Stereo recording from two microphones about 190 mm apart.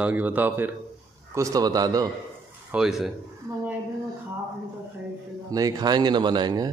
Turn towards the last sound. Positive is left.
turn(degrees=-20)  # may be behind; listen again after turning